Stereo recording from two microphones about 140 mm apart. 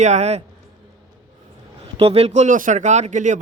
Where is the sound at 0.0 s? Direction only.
55° right (ahead or behind).